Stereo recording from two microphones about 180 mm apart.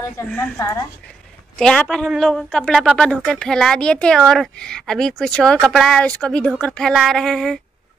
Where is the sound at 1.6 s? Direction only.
5° left (ahead or behind).